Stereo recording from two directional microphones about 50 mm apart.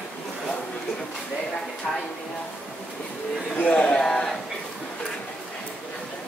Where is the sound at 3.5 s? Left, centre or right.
Left.